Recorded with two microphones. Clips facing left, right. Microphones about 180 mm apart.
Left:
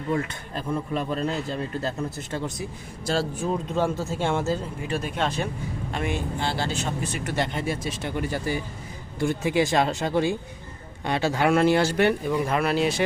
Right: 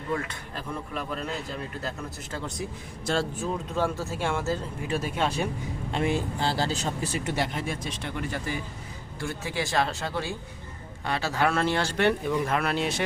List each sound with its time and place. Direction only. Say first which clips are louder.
0.1 s speech: left 4 dB; 25° left (ahead or behind)
3.4 s speech: left 3 dB; 20° left (ahead or behind)
4.9 s speech: even; 5° right (ahead or behind)
5.9 s speech: right 2 dB; 30° right (ahead or behind)
7.3 s speech: left 3 dB; 5° right (ahead or behind)
8.3 s speech: left 4 dB; 35° left (ahead or behind)
9.1 s speech: left 9 dB; 20° left (ahead or behind); by 13.0 s centre (ahead or behind)